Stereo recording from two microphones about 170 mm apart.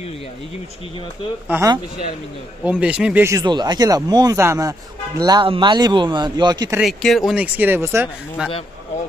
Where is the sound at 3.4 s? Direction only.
25° right (ahead or behind).